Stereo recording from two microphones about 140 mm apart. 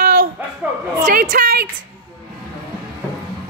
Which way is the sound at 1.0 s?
70° right (ahead or behind).